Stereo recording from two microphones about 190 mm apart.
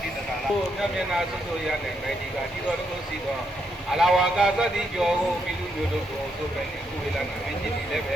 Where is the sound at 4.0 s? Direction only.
Centre (ahead or behind).